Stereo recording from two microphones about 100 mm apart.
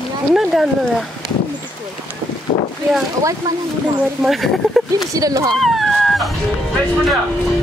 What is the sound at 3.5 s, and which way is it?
Speech, 35° right (ahead or behind).